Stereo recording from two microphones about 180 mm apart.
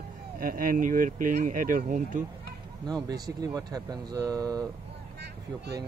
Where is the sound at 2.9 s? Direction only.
20° right (ahead or behind).